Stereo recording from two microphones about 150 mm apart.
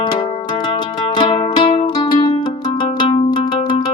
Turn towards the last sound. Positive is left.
turn(degrees=30)  # may be behind; listen again after turning